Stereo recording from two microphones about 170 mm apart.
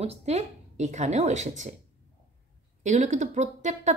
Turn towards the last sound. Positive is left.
turn(degrees=-45)  # may be behind; listen again after turning